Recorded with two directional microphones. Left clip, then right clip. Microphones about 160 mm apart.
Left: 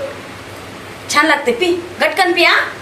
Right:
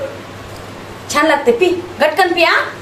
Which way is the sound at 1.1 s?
45° right (ahead or behind).